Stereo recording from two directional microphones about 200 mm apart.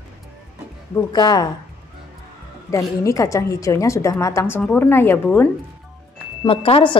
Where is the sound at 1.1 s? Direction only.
20° left (ahead or behind).